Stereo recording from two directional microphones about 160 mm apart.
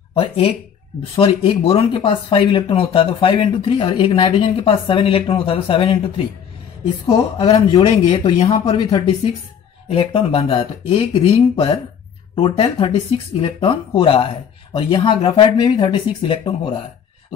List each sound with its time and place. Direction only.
0.1 s speech: 35° left (ahead or behind)